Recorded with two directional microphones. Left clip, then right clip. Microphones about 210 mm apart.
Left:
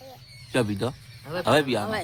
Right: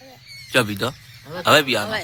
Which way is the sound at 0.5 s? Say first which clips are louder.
Right 6 dB; 5° left (ahead or behind).